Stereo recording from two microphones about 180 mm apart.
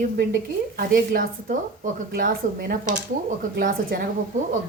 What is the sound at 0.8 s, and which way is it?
A woman's voice, 50° right (ahead or behind).